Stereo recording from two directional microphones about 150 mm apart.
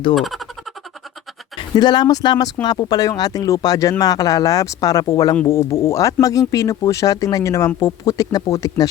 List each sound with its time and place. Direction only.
0.2 s speech: centre (ahead or behind)
1.5 s speech: 30° left (ahead or behind)